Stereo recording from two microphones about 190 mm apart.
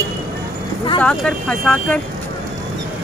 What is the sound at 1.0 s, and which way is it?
Speech, 5° left (ahead or behind).